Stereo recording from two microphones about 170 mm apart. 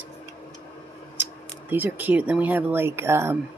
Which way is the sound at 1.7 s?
10° right (ahead or behind).